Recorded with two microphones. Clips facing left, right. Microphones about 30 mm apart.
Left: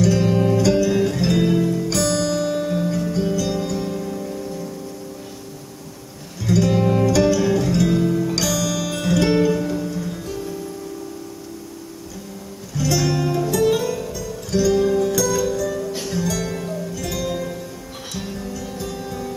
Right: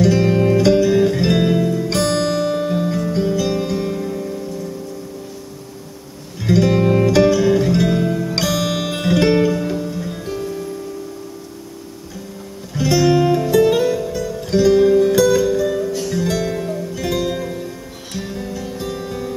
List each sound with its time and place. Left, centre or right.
0.0 s music: right
6.4 s music: right
8.4 s music: right
9.3 s music: centre
12.7 s music: right
16.5 s music: centre
16.9 s music: right